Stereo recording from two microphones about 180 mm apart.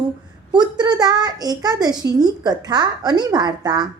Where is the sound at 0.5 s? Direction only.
25° right (ahead or behind).